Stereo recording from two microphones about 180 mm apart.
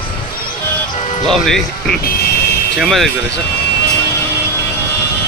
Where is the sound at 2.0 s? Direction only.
60° left (ahead or behind).